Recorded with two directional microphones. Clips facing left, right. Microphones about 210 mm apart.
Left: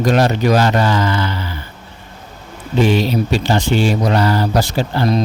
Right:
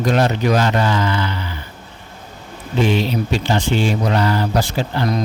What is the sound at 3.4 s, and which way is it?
Speech, 35° left (ahead or behind).